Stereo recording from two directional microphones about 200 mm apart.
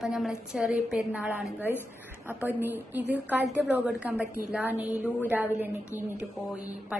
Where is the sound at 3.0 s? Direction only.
60° right (ahead or behind).